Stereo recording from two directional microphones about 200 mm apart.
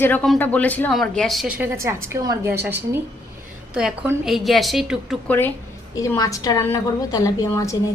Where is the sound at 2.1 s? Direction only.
15° right (ahead or behind).